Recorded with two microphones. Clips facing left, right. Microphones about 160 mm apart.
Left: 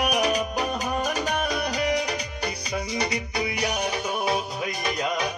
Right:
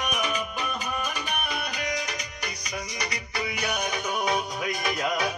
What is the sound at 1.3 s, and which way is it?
Music, 90° left.